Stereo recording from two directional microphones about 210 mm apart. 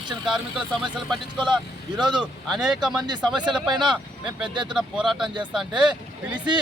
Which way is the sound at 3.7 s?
20° right (ahead or behind).